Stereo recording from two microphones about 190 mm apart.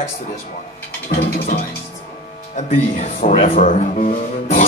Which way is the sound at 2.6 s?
40° left (ahead or behind).